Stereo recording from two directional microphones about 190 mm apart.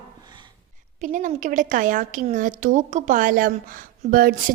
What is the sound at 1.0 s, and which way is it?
A woman's voice, 40° right (ahead or behind).